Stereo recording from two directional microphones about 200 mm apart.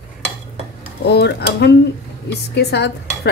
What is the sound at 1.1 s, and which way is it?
A woman's voice, 55° left (ahead or behind).